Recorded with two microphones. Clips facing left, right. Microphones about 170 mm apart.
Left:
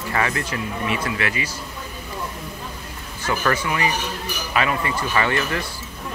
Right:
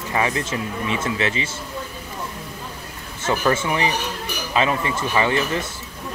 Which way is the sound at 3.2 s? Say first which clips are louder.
Right 2 dB; 25° right (ahead or behind).